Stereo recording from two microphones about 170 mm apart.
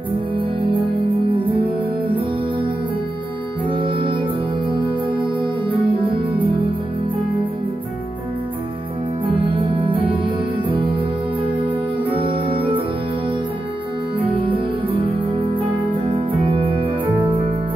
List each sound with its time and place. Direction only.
0.4 s music: 30° right (ahead or behind)
9.8 s music: 30° right (ahead or behind)
14.2 s music: 30° right (ahead or behind)
16.3 s music: 30° right (ahead or behind)
17.0 s music: 10° right (ahead or behind)